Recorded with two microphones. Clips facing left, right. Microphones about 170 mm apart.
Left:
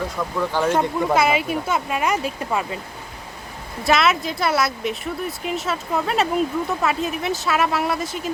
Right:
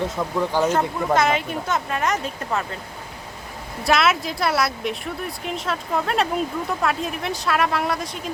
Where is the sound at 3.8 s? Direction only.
Centre (ahead or behind).